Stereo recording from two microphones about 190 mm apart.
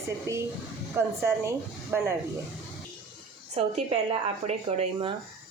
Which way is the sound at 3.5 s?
35° right (ahead or behind).